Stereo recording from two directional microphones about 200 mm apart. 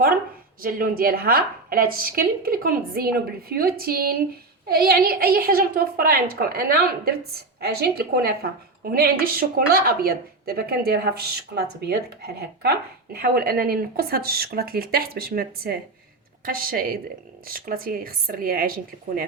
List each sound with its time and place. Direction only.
0.6 s a woman's voice: 45° right (ahead or behind)